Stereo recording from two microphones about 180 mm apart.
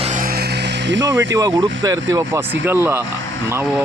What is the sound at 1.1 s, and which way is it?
Speech, 20° right (ahead or behind).